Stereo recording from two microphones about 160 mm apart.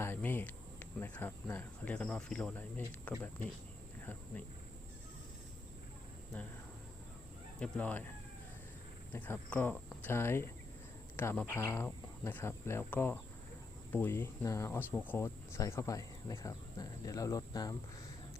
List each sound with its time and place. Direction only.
0.0 s speech: 10° left (ahead or behind)
6.3 s speech: 10° left (ahead or behind)
7.6 s speech: 10° left (ahead or behind)
9.1 s speech: 10° left (ahead or behind)